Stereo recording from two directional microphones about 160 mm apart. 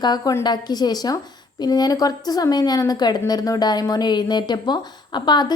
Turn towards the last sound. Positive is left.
turn(degrees=25)  # may be behind; listen again after turning